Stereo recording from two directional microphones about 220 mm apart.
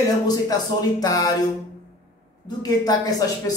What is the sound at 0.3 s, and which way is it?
A man's voice, 15° left (ahead or behind).